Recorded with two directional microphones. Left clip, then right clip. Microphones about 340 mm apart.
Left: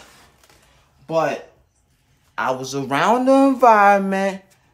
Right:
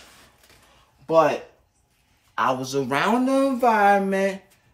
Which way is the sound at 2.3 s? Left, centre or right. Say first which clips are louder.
Even; centre.